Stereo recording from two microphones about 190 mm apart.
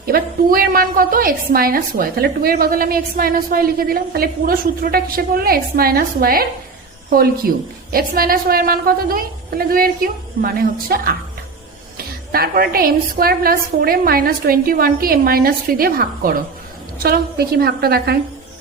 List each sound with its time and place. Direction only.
0.0 s a woman's voice: 50° right (ahead or behind)